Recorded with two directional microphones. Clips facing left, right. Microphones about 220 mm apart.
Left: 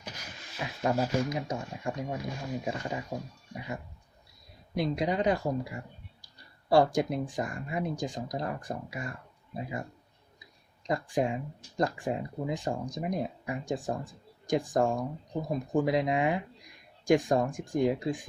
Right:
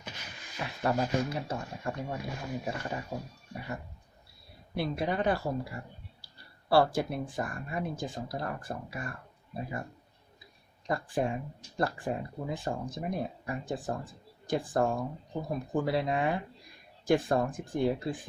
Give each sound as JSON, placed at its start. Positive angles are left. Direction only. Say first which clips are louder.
{"t": 0.6, "sound": "speech", "louder": "left 1 dB", "side_deg": 15}
{"t": 10.8, "sound": "speech", "louder": "left 2 dB", "side_deg": 15}